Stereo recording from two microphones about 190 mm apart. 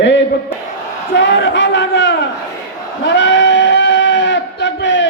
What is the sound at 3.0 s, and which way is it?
Sheep, 70° left (ahead or behind).